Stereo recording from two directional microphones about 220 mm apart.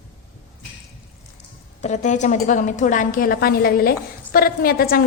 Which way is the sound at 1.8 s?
35° left (ahead or behind).